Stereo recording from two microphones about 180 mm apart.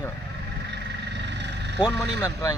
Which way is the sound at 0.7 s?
70° right (ahead or behind).